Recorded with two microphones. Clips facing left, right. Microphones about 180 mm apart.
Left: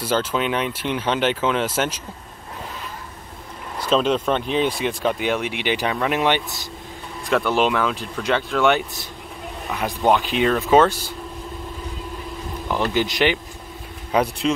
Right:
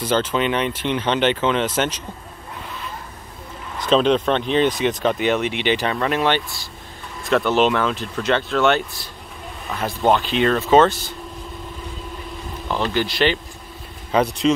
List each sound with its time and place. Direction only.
0.0 s speech: 10° left (ahead or behind)
3.7 s speech: 5° left (ahead or behind)
12.6 s speech: 15° left (ahead or behind)